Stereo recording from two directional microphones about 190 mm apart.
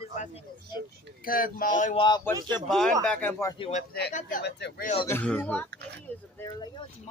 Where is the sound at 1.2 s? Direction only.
45° left (ahead or behind).